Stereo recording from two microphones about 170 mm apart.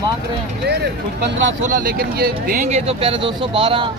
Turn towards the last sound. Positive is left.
turn(degrees=-30)  # may be behind; listen again after turning